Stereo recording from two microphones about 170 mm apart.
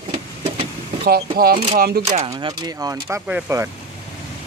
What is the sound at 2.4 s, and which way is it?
Speech, 20° right (ahead or behind).